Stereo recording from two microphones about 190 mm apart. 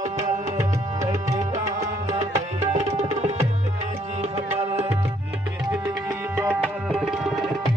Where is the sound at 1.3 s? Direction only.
40° right (ahead or behind).